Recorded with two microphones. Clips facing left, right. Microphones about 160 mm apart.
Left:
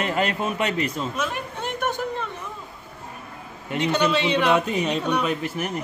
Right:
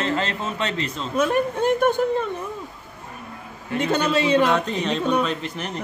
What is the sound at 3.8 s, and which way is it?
Speech, 45° right (ahead or behind).